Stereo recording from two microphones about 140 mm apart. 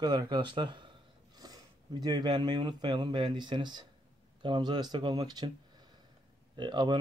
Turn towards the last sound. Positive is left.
turn(degrees=-35)  # may be behind; listen again after turning